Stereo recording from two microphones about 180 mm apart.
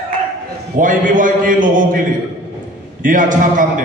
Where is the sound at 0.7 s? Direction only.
50° right (ahead or behind).